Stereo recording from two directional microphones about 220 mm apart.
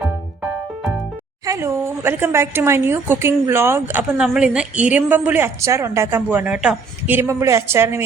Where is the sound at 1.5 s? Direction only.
10° right (ahead or behind).